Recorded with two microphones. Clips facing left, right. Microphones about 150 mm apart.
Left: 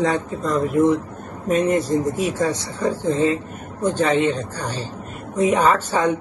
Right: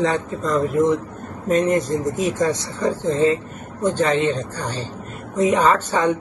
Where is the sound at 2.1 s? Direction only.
10° left (ahead or behind).